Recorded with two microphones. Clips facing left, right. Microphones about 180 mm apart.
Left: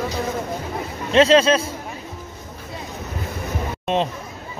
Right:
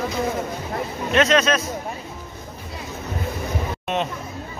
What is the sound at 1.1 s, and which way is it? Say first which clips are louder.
Speech: left 4 dB; 30° left (ahead or behind).